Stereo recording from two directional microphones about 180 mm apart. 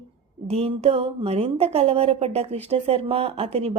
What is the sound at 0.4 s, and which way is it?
A woman's voice, 35° right (ahead or behind).